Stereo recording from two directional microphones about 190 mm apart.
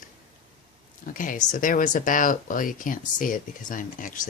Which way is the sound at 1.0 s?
45° left (ahead or behind).